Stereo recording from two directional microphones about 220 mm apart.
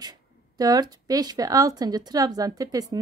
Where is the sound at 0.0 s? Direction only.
15° right (ahead or behind).